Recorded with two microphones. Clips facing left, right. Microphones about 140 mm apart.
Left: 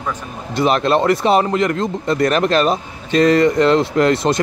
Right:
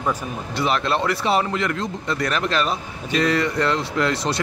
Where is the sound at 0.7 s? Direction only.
25° left (ahead or behind).